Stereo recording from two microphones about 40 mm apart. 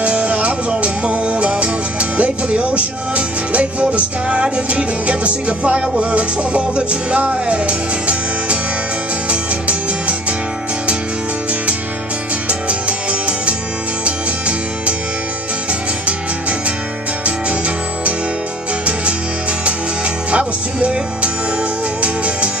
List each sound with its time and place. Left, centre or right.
0.0 s music: right
12.4 s music: right
16.1 s music: right
20.2 s music: right